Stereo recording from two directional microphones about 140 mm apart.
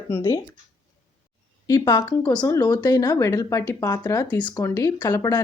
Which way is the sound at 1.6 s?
30° left (ahead or behind).